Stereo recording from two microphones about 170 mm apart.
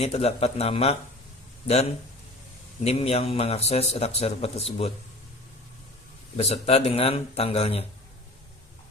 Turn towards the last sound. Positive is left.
turn(degrees=35)  # may be behind; listen again after turning